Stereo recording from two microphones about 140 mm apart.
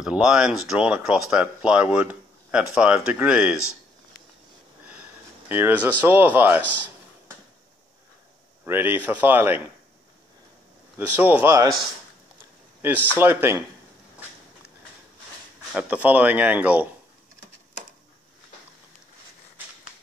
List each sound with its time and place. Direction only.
0.0 s speech: 5° right (ahead or behind)
5.5 s speech: 15° right (ahead or behind)
8.6 s speech: 15° right (ahead or behind)
11.0 s speech: 15° right (ahead or behind)
13.2 s speech: 15° right (ahead or behind)
15.7 s speech: 10° right (ahead or behind)